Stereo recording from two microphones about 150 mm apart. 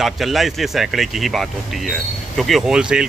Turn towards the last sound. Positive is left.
turn(degrees=-5)  # may be behind; listen again after turning